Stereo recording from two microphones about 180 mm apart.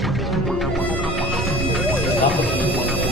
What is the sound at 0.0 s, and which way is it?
Music, centre (ahead or behind).